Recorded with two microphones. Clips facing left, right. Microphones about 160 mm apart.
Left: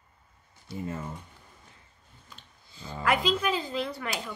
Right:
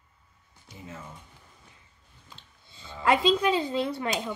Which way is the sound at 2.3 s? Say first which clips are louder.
Right 1 dB; 25° right (ahead or behind).